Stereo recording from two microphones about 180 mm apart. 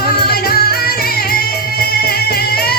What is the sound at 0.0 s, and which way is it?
Music, 60° left (ahead or behind).